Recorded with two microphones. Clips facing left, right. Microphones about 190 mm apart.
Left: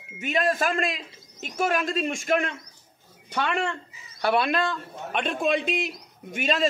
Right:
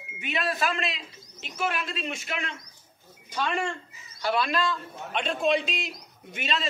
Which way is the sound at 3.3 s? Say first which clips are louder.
Left 2 dB; 65° left (ahead or behind).